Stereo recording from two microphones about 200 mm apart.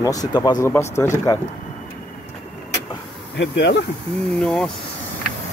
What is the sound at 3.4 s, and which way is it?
Speech, 60° left (ahead or behind).